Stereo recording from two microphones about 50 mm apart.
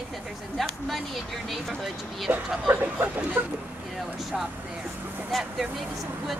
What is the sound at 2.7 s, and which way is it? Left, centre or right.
Speech, right.